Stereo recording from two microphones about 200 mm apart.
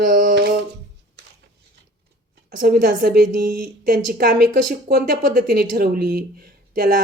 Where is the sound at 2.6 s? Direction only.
50° right (ahead or behind).